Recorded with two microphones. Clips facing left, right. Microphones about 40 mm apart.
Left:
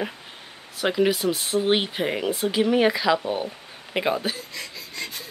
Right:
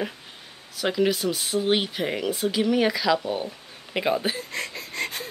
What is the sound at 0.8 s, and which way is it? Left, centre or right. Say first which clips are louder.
Speech: left 2 dB; centre.